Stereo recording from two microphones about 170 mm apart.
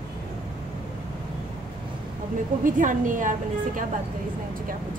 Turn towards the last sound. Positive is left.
turn(degrees=-50)  # may be behind; listen again after turning